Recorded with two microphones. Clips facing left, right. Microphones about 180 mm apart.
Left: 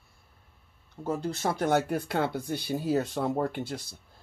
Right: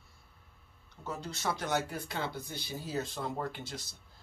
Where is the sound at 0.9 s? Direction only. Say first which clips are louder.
Left 9 dB; 50° left (ahead or behind).